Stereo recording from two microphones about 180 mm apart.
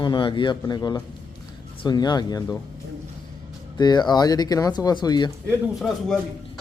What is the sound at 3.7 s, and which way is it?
A man's voice, 25° left (ahead or behind).